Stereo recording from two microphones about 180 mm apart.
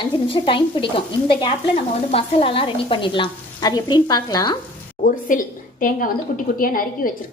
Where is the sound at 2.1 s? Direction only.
30° left (ahead or behind).